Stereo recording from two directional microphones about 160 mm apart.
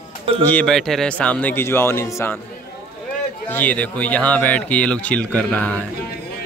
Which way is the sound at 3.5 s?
10° left (ahead or behind).